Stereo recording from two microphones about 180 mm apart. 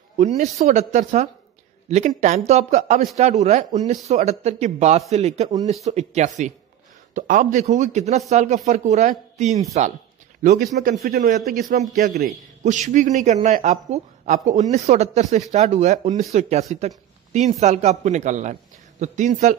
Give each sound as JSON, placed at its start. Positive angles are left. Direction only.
{"t": 0.2, "sound": "a man's voice", "side_deg": -40}